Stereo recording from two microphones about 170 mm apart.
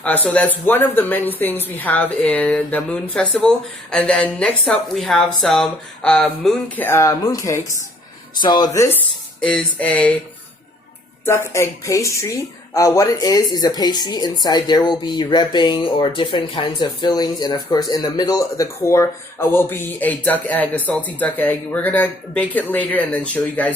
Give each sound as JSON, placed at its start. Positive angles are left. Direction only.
{"t": 0.0, "sound": "a woman's voice", "side_deg": 10}
{"t": 6.8, "sound": "speech", "side_deg": 15}
{"t": 9.4, "sound": "speech", "side_deg": 5}
{"t": 11.3, "sound": "speech", "side_deg": 15}